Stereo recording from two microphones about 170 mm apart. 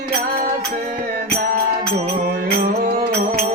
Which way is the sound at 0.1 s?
55° right (ahead or behind).